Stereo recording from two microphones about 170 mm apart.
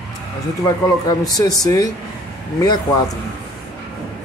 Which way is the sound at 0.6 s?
20° left (ahead or behind).